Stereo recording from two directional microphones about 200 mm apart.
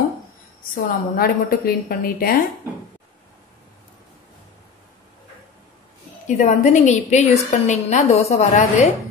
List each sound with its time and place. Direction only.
0.7 s a woman's voice: 45° left (ahead or behind)
6.2 s a woman's voice: 35° left (ahead or behind)